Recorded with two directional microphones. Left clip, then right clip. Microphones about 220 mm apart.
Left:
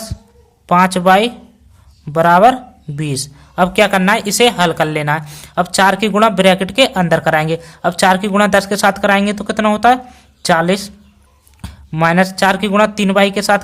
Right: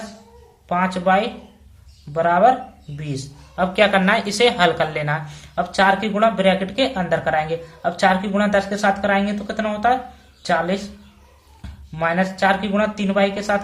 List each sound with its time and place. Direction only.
0.7 s speech: 50° left (ahead or behind)